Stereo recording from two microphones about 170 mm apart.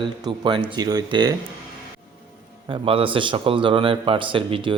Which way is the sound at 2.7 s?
30° right (ahead or behind).